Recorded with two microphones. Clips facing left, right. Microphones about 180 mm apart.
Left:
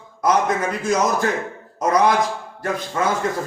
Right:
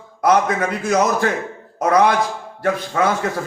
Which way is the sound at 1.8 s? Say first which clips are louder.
Right 2 dB; 60° right (ahead or behind).